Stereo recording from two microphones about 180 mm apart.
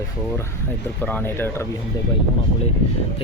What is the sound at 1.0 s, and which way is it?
Speech, 10° left (ahead or behind).